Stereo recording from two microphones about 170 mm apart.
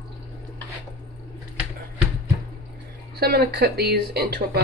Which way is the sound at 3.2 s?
65° right (ahead or behind).